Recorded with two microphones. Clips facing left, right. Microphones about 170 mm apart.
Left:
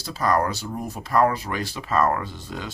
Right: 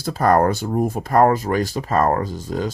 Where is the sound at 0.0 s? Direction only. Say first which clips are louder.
Right 6 dB; 55° right (ahead or behind).